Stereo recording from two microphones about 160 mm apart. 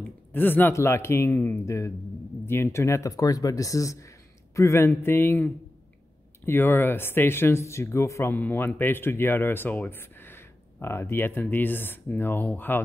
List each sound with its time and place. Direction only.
0.3 s speech: 10° left (ahead or behind)